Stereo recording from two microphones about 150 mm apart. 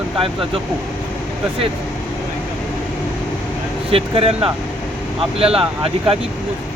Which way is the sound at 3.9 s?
40° right (ahead or behind).